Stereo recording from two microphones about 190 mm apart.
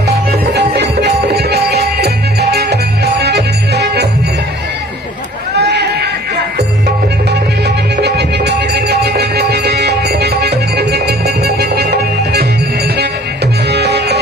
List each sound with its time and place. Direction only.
0.1 s music: 55° right (ahead or behind)
5.5 s a sound: 60° right (ahead or behind)
6.6 s music: 60° right (ahead or behind)
13.7 s music: 60° right (ahead or behind)